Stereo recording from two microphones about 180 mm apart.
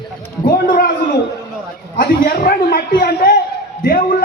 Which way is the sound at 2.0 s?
50° left (ahead or behind).